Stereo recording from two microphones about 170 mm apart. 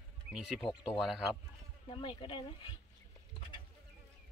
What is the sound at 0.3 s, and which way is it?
Speech, 5° right (ahead or behind).